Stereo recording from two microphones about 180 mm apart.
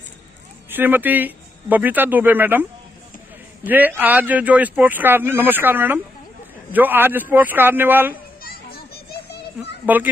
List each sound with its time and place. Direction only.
0.7 s speech: 10° right (ahead or behind)
3.6 s speech: 10° right (ahead or behind)
8.4 s children playing: 55° left (ahead or behind)